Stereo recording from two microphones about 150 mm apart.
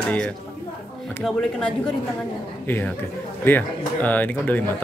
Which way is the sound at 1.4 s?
5° left (ahead or behind).